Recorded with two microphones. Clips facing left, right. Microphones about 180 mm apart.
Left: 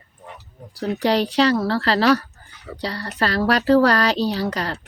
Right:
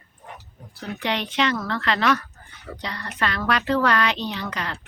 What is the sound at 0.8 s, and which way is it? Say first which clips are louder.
Speech: left 8 dB; 40° left (ahead or behind).